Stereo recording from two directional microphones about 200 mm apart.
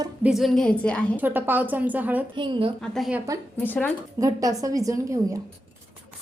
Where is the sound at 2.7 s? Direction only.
Centre (ahead or behind).